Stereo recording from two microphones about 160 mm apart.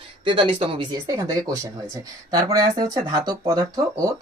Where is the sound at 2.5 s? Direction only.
25° right (ahead or behind).